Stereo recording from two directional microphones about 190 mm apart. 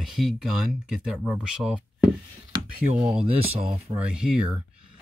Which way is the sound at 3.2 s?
35° right (ahead or behind).